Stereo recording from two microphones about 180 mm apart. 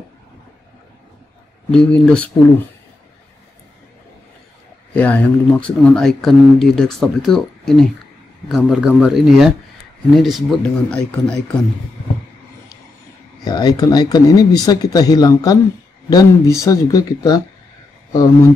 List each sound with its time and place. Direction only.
1.7 s speech: 5° left (ahead or behind)
4.9 s speech: 10° left (ahead or behind)
13.4 s speech: 20° left (ahead or behind)